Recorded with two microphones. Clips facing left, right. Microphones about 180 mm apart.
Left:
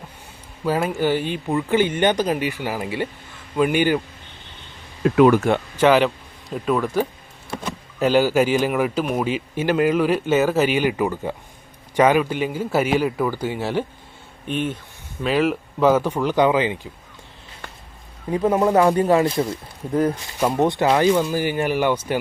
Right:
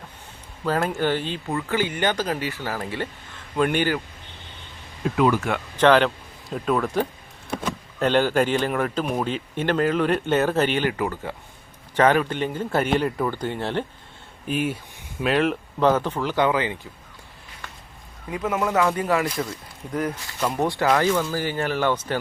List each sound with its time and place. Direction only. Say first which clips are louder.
0.6 s a man's voice: left 2 dB; 10° left (ahead or behind)
5.0 s speech: left 6 dB; 60° left (ahead or behind)
5.7 s a man's voice: even; 5° left (ahead or behind)
14.4 s a man's voice: even; 5° right (ahead or behind); by 16.8 s 20° left (ahead or behind)
18.3 s a man's voice: left 7 dB; 30° left (ahead or behind); by 22.2 s 15° left (ahead or behind)